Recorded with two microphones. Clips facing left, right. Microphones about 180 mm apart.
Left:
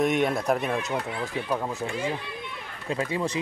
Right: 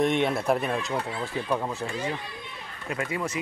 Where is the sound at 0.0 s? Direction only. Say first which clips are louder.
Even; 5° left (ahead or behind).